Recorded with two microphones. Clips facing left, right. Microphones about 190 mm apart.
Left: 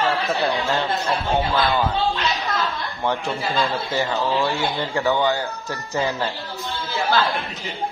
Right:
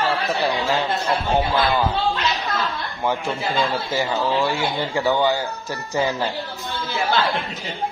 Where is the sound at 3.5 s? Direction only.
15° right (ahead or behind).